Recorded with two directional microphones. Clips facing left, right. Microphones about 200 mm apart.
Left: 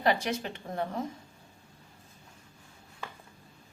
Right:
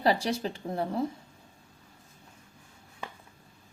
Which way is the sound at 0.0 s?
35° right (ahead or behind).